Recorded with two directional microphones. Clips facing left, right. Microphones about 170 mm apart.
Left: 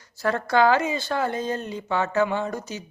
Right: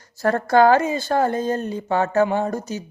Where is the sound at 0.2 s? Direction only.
45° right (ahead or behind).